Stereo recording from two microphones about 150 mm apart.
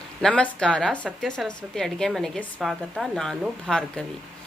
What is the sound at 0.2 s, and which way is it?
A woman's voice, 5° left (ahead or behind).